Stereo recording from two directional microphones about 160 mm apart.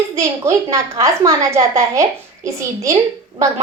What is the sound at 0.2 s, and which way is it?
A woman's voice, 20° right (ahead or behind).